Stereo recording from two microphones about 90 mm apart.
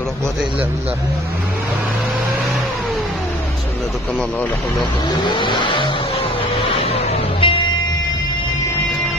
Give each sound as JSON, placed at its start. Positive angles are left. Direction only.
{"t": 5.2, "sound": "vehicle", "side_deg": 60}